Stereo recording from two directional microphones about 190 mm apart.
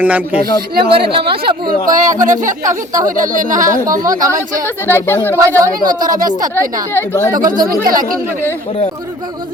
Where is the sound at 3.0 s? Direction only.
45° right (ahead or behind).